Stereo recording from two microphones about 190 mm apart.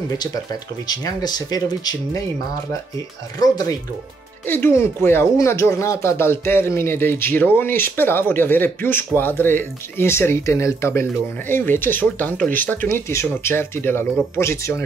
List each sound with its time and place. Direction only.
0.2 s speech: 20° left (ahead or behind)
3.3 s speech: 20° left (ahead or behind)